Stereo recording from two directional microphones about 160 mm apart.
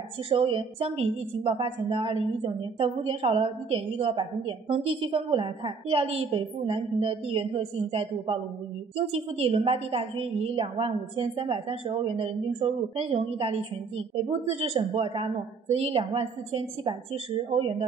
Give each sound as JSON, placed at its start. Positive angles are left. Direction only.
{"t": 0.3, "sound": "a woman's voice", "side_deg": -35}